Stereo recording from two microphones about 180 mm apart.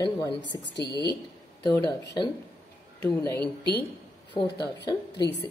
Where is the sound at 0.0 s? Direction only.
25° left (ahead or behind).